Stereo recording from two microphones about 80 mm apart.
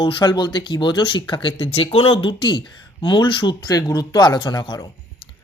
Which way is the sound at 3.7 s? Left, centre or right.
Left.